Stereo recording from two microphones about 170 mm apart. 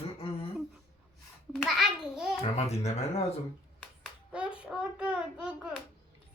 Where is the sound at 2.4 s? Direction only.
40° left (ahead or behind).